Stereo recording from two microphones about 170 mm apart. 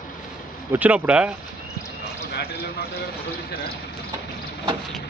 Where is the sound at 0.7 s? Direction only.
10° right (ahead or behind).